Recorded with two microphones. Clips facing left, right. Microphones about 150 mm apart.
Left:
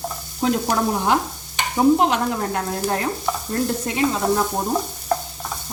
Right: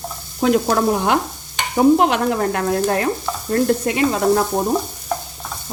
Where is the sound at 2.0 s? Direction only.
65° right (ahead or behind).